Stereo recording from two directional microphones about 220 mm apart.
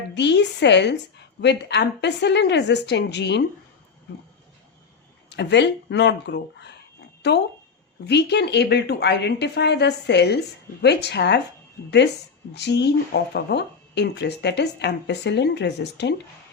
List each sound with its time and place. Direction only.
0.1 s speech: 50° left (ahead or behind)
5.3 s speech: 50° left (ahead or behind)
12.5 s speech: 50° left (ahead or behind)